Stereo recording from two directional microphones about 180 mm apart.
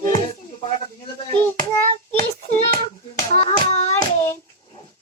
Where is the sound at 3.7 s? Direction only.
35° left (ahead or behind).